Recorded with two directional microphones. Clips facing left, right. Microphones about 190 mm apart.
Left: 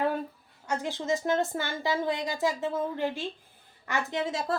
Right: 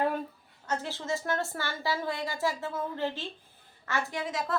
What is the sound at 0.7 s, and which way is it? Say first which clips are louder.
Speech: left 3 dB; 15° left (ahead or behind).